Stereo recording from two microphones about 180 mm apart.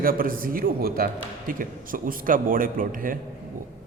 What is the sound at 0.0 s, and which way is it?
A man's voice, 55° right (ahead or behind).